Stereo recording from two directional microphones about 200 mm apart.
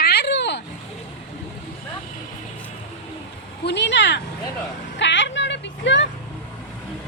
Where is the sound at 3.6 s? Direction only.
60° left (ahead or behind).